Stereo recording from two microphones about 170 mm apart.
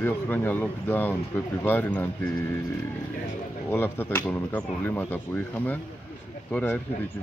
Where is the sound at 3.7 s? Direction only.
10° left (ahead or behind).